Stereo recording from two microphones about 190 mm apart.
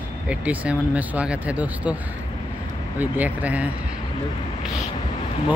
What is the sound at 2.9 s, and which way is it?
Speech, 10° right (ahead or behind).